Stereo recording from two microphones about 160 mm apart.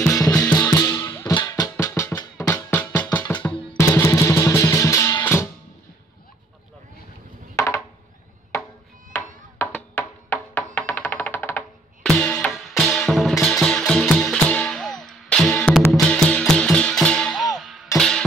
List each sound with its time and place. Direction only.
0.3 s music: 15° left (ahead or behind)
7.5 s a sound: 20° left (ahead or behind)
9.6 s music: 10° left (ahead or behind)